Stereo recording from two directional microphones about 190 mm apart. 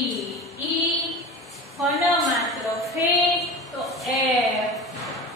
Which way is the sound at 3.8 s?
Centre (ahead or behind).